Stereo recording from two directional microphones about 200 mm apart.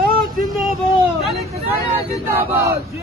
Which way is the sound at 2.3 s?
10° right (ahead or behind).